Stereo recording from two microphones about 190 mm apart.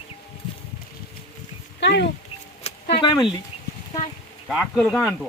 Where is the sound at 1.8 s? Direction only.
65° left (ahead or behind).